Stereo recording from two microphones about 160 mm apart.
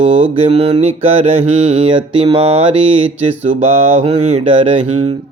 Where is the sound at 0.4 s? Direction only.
40° right (ahead or behind).